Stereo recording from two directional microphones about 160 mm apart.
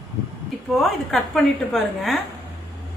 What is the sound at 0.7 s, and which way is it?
A woman's voice, centre (ahead or behind).